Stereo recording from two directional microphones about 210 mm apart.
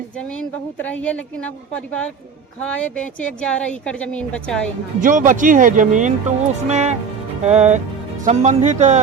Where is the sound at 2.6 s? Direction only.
5° left (ahead or behind).